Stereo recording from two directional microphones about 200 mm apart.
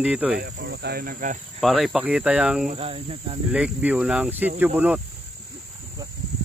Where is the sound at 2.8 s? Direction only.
30° right (ahead or behind).